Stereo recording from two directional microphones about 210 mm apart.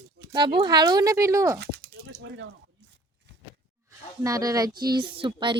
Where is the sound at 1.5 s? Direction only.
50° right (ahead or behind).